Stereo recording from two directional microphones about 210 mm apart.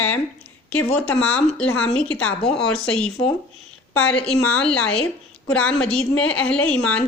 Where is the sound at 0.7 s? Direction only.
5° left (ahead or behind).